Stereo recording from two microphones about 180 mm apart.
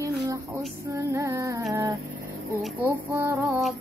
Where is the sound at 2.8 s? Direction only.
15° right (ahead or behind).